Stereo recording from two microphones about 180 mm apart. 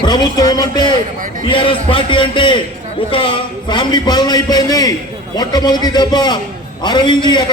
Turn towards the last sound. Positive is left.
turn(degrees=25)  # may be behind; listen again after turning